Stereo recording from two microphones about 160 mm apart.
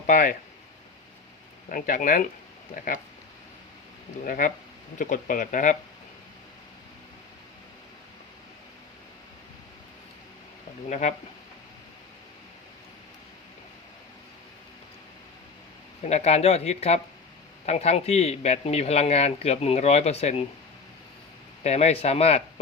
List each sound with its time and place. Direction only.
0.1 s speech: 55° left (ahead or behind)
1.7 s speech: 55° left (ahead or behind)
4.2 s speech: 55° left (ahead or behind)
10.8 s speech: 45° left (ahead or behind)
16.0 s a man's voice: 45° left (ahead or behind)
21.6 s a man's voice: 40° left (ahead or behind)